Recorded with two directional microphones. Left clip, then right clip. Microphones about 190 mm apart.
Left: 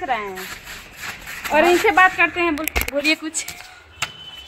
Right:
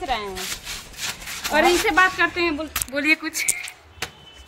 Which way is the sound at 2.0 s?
25° left (ahead or behind).